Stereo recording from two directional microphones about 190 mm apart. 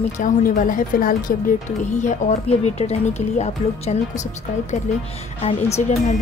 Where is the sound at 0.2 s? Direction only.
45° left (ahead or behind).